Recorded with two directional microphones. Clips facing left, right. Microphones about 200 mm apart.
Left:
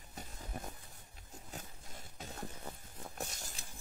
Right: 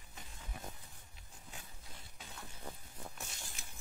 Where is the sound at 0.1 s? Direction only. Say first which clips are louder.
Left 6 dB; 40° left (ahead or behind).